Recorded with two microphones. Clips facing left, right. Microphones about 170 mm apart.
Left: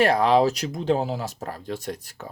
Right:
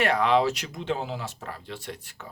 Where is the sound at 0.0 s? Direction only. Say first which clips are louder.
Left 4 dB; 35° left (ahead or behind).